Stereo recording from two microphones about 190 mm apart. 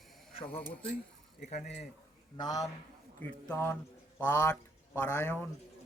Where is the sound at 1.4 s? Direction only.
35° left (ahead or behind).